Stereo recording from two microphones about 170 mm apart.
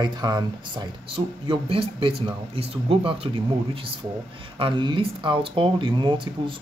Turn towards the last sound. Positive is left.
turn(degrees=-30)  # may be behind; listen again after turning